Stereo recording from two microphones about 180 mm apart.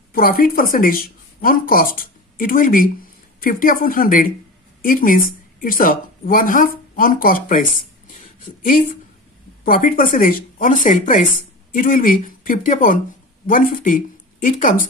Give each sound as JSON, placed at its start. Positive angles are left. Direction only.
{"t": 0.1, "sound": "a woman's voice", "side_deg": 50}
{"t": 7.7, "sound": "a sound", "side_deg": 45}
{"t": 9.7, "sound": "speech", "side_deg": 50}